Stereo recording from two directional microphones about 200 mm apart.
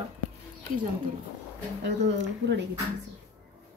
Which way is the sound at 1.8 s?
60° right (ahead or behind).